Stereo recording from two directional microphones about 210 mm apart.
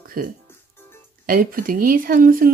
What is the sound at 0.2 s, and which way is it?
Speech, 45° right (ahead or behind).